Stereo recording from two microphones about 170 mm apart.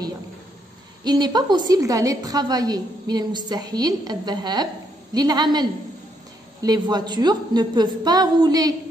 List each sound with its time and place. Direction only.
1.0 s a woman's voice: 25° right (ahead or behind)